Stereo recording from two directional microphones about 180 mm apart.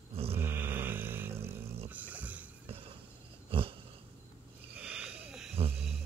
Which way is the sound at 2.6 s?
30° right (ahead or behind).